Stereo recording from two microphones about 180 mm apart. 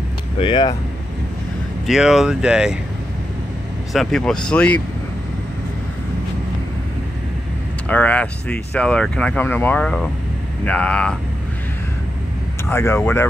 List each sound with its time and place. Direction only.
0.4 s speech: 25° left (ahead or behind)
1.9 s speech: 5° right (ahead or behind)
3.9 s speech: centre (ahead or behind)
7.9 s speech: 5° left (ahead or behind)
12.6 s speech: 15° left (ahead or behind)